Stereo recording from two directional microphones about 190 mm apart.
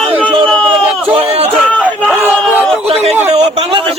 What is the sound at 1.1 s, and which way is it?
Speech, 30° right (ahead or behind).